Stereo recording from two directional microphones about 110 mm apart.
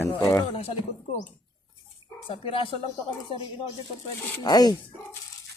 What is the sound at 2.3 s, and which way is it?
Speech, 55° left (ahead or behind).